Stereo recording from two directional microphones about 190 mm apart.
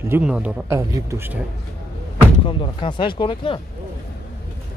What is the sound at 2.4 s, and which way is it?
Speech, 25° left (ahead or behind).